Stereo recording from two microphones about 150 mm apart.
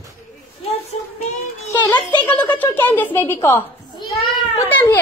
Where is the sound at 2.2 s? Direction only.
10° left (ahead or behind).